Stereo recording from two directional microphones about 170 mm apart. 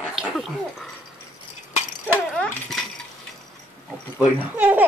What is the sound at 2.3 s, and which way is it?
Dog, 5° left (ahead or behind).